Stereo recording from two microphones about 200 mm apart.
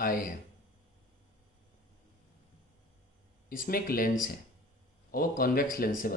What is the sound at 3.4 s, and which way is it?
Speech, 45° left (ahead or behind).